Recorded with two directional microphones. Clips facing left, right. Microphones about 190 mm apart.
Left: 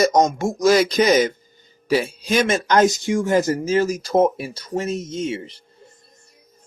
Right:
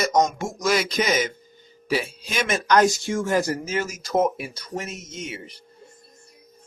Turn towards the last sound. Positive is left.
turn(degrees=25)  # may be behind; listen again after turning